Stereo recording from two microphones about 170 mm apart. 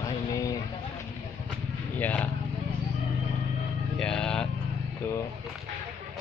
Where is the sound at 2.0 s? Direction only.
10° left (ahead or behind).